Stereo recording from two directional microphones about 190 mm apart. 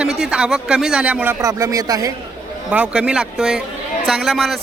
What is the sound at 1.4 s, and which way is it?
Speech, 15° right (ahead or behind).